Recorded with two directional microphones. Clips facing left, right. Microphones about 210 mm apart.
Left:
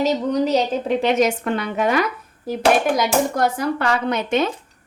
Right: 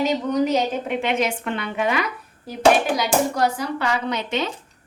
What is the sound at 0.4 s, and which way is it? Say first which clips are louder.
Speech: left 2 dB; 40° left (ahead or behind).